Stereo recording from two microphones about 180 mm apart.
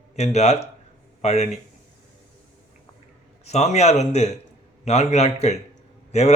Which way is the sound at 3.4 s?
35° left (ahead or behind).